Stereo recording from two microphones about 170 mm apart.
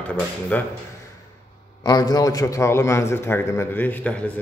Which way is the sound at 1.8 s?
25° left (ahead or behind).